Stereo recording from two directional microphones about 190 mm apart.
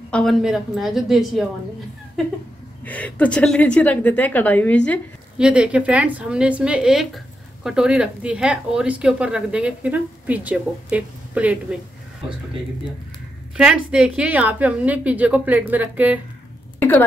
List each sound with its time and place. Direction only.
0.1 s speech: centre (ahead or behind)
2.8 s a woman's voice: 10° left (ahead or behind)
5.4 s speech: 5° right (ahead or behind)
13.6 s a woman's voice: 5° right (ahead or behind)